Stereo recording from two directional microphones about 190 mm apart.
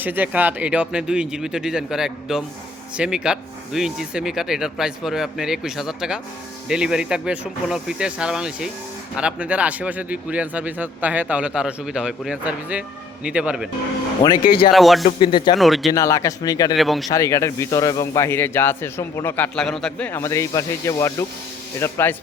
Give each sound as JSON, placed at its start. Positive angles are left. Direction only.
{"t": 0.0, "sound": "speech", "side_deg": -10}
{"t": 14.4, "sound": "speech", "side_deg": 50}
{"t": 14.7, "sound": "speech", "side_deg": 0}
{"t": 15.2, "sound": "speech", "side_deg": 25}
{"t": 15.5, "sound": "speech", "side_deg": 0}
{"t": 15.9, "sound": "speech", "side_deg": 15}
{"t": 16.7, "sound": "speech", "side_deg": 0}
{"t": 17.1, "sound": "speech", "side_deg": 15}